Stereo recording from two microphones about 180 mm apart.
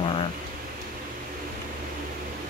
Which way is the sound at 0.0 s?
30° left (ahead or behind).